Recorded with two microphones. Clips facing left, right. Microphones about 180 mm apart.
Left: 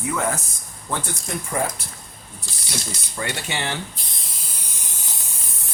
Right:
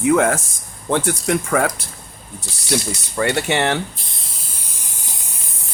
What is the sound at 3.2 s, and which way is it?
Speech, 65° right (ahead or behind).